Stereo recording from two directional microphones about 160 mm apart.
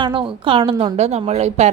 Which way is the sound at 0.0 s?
30° right (ahead or behind).